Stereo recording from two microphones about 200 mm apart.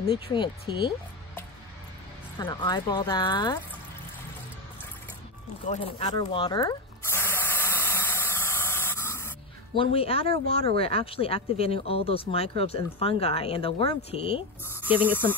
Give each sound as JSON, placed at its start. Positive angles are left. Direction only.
{"t": 0.1, "sound": "speech", "side_deg": 25}
{"t": 2.3, "sound": "speech", "side_deg": 20}
{"t": 5.7, "sound": "speech", "side_deg": 30}
{"t": 6.2, "sound": "a sound", "side_deg": 25}
{"t": 9.8, "sound": "speech", "side_deg": 30}
{"t": 14.9, "sound": "speech", "side_deg": -10}